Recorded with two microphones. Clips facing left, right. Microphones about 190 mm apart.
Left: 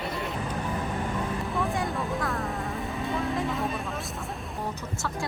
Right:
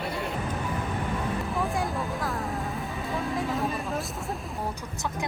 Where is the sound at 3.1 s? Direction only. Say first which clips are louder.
Even; centre (ahead or behind).